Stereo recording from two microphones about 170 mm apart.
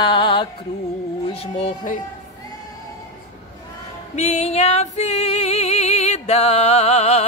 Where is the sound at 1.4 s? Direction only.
40° left (ahead or behind).